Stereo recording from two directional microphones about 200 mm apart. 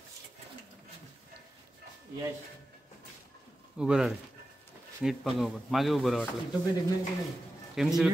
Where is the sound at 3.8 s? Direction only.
5° right (ahead or behind).